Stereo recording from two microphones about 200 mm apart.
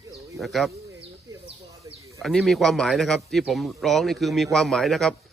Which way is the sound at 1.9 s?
20° right (ahead or behind).